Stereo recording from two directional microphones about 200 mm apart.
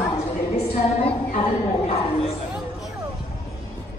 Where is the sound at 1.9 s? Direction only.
30° left (ahead or behind).